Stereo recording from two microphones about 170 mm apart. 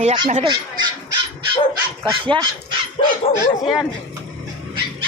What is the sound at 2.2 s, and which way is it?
Speech, 30° right (ahead or behind).